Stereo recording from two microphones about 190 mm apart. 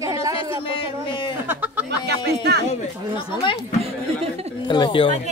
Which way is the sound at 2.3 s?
60° right (ahead or behind).